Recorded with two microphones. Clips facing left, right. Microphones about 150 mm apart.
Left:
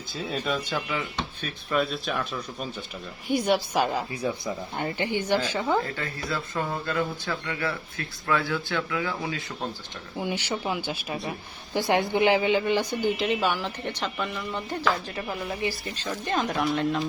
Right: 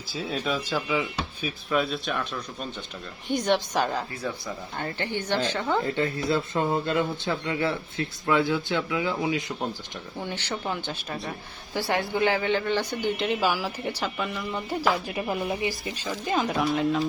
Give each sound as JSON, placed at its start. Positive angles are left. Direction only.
{"t": 0.1, "sound": "speech", "side_deg": -5}
{"t": 5.8, "sound": "speech", "side_deg": -25}
{"t": 10.2, "sound": "speech", "side_deg": 10}
{"t": 13.1, "sound": "a woman's voice", "side_deg": 0}